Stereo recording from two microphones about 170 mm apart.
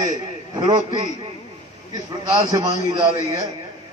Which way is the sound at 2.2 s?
20° right (ahead or behind).